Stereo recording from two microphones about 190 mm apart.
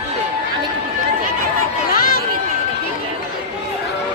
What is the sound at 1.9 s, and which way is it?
Crowd, 50° left (ahead or behind).